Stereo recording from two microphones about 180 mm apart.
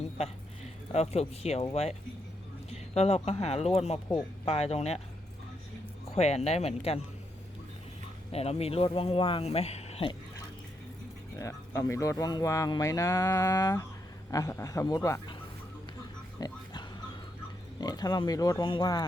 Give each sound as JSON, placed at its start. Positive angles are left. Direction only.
{"t": 0.9, "sound": "speech", "side_deg": 35}
{"t": 2.6, "sound": "a sound", "side_deg": 35}
{"t": 3.2, "sound": "speech", "side_deg": 35}
{"t": 6.1, "sound": "speech", "side_deg": 35}
{"t": 8.3, "sound": "speech", "side_deg": 35}
{"t": 11.3, "sound": "speech", "side_deg": 15}
{"t": 16.4, "sound": "speech", "side_deg": 20}
{"t": 17.7, "sound": "speech", "side_deg": 20}